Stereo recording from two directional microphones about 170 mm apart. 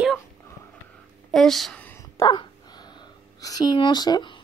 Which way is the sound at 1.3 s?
Centre (ahead or behind).